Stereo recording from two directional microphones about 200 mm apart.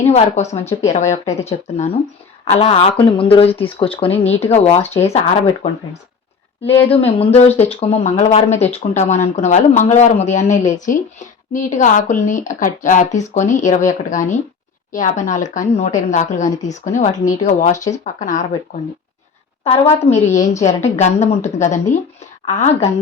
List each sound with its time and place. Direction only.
0.1 s speech: 35° left (ahead or behind)
6.9 s speech: 30° left (ahead or behind)
19.6 s speech: 30° left (ahead or behind)